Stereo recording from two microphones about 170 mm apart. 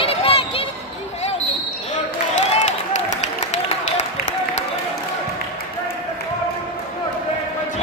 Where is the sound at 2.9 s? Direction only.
45° left (ahead or behind).